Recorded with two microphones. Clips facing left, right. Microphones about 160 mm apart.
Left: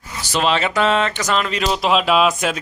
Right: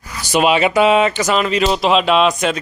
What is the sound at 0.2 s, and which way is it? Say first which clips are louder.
A man's voice: right 5 dB; 15° right (ahead or behind).